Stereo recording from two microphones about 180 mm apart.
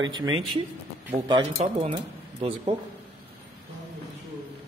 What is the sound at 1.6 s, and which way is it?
Speech, 35° right (ahead or behind).